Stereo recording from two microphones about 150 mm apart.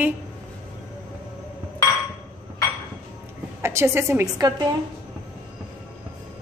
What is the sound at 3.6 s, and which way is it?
Speech, 20° right (ahead or behind).